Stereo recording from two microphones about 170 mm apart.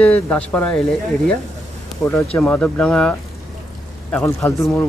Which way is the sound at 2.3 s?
10° left (ahead or behind).